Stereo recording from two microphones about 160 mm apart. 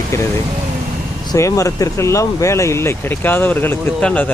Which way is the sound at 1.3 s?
20° left (ahead or behind).